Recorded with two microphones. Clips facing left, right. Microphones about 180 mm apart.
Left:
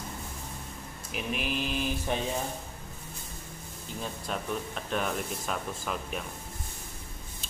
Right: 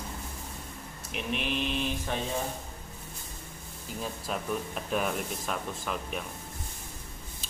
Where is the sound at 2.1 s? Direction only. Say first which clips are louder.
Left 3 dB; 15° left (ahead or behind).